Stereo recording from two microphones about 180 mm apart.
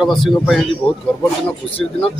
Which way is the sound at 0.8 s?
30° left (ahead or behind).